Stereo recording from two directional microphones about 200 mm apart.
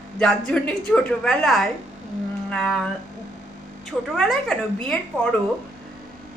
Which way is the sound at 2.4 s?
5° left (ahead or behind).